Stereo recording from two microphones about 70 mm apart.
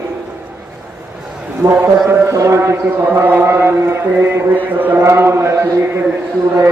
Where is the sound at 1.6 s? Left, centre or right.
Right.